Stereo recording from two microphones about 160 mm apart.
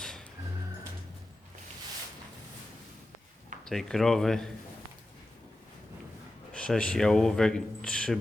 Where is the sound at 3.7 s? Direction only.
Centre (ahead or behind).